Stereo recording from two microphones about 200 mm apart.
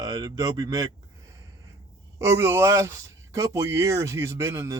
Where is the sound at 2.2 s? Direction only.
15° right (ahead or behind).